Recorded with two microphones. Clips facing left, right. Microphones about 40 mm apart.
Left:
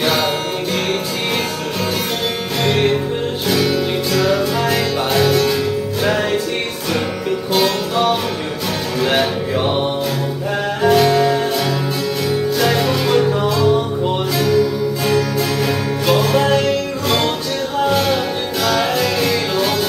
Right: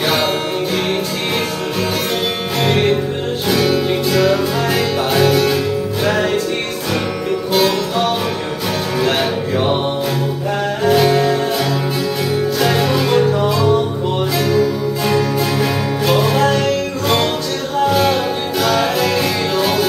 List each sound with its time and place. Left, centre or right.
2.6 s music: centre
7.5 s music: centre
10.8 s music: centre